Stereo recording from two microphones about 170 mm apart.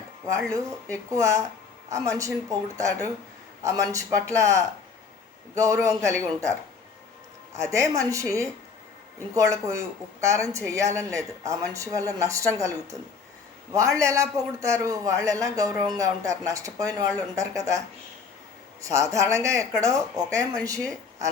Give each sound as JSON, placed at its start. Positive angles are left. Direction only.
{"t": 0.3, "sound": "a man's voice", "side_deg": -20}